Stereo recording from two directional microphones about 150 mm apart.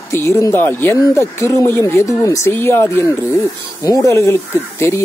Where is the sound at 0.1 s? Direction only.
20° left (ahead or behind).